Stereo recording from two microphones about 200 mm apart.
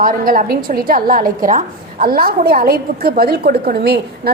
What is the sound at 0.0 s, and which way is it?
A woman's voice, 45° right (ahead or behind).